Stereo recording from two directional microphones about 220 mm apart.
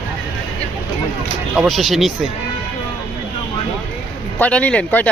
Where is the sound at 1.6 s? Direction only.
Centre (ahead or behind).